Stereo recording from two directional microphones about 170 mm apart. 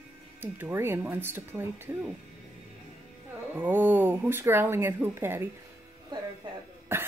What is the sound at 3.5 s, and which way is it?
Speech, 10° right (ahead or behind).